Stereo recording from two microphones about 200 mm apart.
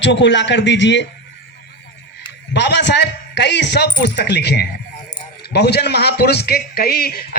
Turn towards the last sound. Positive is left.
turn(degrees=50)  # may be behind; listen again after turning